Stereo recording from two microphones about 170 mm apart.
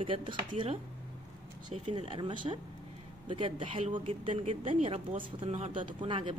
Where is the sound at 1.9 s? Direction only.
30° right (ahead or behind).